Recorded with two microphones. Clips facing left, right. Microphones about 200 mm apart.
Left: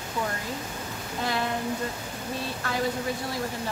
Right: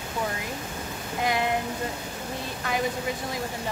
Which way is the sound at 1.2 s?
15° right (ahead or behind).